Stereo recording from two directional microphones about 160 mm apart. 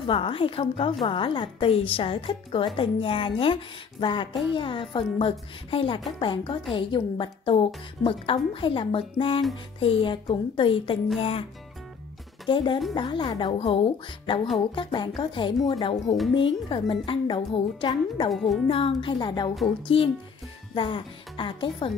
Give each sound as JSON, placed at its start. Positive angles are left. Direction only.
{"t": 0.0, "sound": "a woman's voice", "side_deg": 35}
{"t": 12.4, "sound": "a woman's voice", "side_deg": 30}
{"t": 14.2, "sound": "music", "side_deg": 35}
{"t": 14.8, "sound": "a woman's voice", "side_deg": 30}
{"t": 18.3, "sound": "a child's voice", "side_deg": 0}
{"t": 18.7, "sound": "a woman's voice", "side_deg": 35}